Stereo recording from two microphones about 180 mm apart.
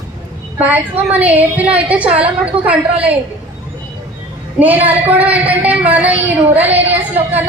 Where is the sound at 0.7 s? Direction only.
10° right (ahead or behind).